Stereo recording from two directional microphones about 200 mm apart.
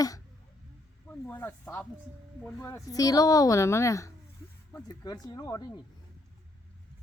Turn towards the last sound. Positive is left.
turn(degrees=20)  # may be behind; listen again after turning